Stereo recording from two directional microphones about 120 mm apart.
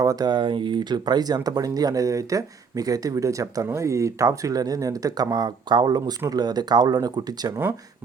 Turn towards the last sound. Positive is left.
turn(degrees=-35)  # may be behind; listen again after turning